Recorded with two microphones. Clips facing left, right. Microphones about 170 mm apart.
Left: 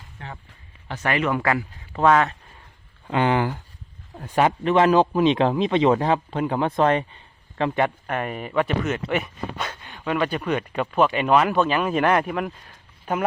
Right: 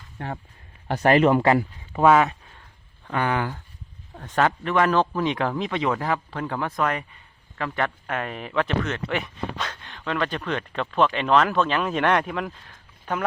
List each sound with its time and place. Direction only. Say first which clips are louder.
0.2 s speech: right 6 dB; 50° right (ahead or behind)
0.9 s speech: right 6 dB; 35° right (ahead or behind)
1.9 s speech: right 1 dB; 10° right (ahead or behind)
3.1 s speech: left 4 dB; 20° left (ahead or behind)
8.0 s speech: left 2 dB; 5° left (ahead or behind)